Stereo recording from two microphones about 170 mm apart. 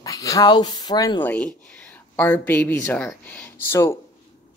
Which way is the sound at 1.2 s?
10° left (ahead or behind).